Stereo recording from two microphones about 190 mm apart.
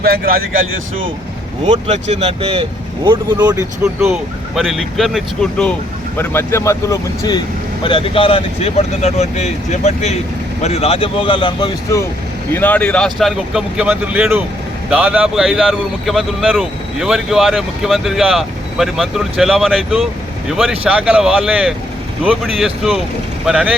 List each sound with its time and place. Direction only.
0.0 s speech: 55° right (ahead or behind)
1.9 s speech: 35° right (ahead or behind); by 4.1 s 15° right (ahead or behind)
4.1 s speech: centre (ahead or behind); by 12.0 s 20° left (ahead or behind)
12.5 s speech: 10° left (ahead or behind)